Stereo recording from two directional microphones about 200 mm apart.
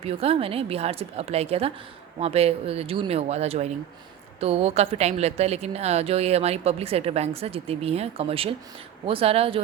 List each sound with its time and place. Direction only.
0.0 s a woman's voice: 30° right (ahead or behind)